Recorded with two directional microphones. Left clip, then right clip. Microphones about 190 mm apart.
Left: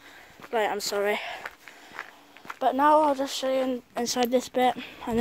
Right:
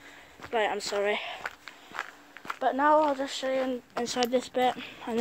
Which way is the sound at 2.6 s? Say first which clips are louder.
Left 3 dB; 45° left (ahead or behind).